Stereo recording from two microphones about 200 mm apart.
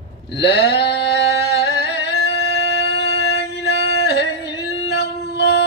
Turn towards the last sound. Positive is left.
turn(degrees=55)  # may be behind; listen again after turning